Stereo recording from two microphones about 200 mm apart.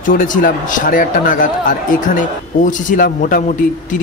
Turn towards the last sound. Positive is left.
turn(degrees=40)  # may be behind; listen again after turning